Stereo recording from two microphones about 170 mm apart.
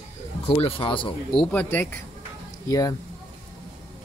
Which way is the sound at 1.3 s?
5° left (ahead or behind).